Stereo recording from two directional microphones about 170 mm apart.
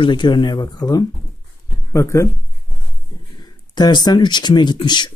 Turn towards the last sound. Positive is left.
turn(degrees=25)  # may be behind; listen again after turning